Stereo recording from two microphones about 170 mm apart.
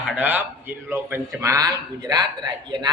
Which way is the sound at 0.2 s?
10° right (ahead or behind).